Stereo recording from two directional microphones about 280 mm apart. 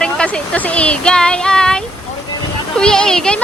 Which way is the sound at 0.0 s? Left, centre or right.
Centre.